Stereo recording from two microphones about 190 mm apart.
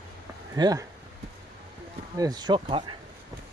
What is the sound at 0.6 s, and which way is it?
Speech, 20° right (ahead or behind).